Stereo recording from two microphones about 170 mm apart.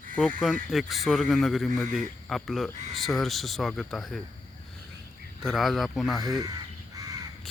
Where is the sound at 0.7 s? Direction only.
Centre (ahead or behind).